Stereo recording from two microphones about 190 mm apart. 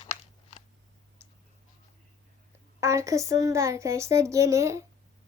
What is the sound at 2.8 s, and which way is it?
A woman's voice, 15° right (ahead or behind).